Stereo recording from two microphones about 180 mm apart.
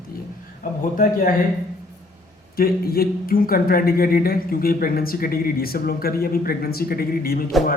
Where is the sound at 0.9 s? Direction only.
50° left (ahead or behind).